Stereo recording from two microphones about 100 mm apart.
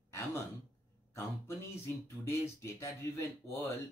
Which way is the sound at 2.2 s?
30° left (ahead or behind).